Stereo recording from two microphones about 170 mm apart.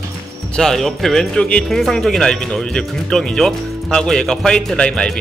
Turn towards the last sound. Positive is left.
turn(degrees=5)  # may be behind; listen again after turning